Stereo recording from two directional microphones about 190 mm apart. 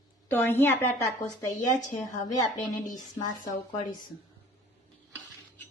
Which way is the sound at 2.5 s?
40° left (ahead or behind).